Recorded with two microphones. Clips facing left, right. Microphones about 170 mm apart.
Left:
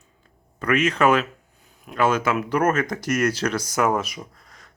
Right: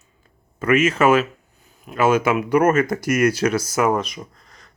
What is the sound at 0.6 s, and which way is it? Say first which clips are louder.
Speech: right 3 dB; 5° right (ahead or behind).